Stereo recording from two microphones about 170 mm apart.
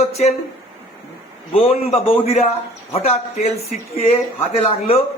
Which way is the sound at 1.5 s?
35° left (ahead or behind).